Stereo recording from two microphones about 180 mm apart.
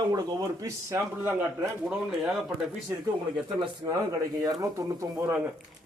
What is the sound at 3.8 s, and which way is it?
Speech, 20° right (ahead or behind).